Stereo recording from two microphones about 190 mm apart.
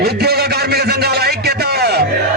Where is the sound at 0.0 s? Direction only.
55° right (ahead or behind).